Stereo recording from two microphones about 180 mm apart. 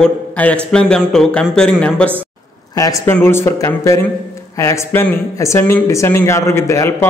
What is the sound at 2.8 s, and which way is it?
Speech, 20° left (ahead or behind).